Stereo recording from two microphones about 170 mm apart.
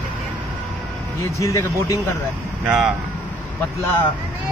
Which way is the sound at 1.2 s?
20° left (ahead or behind).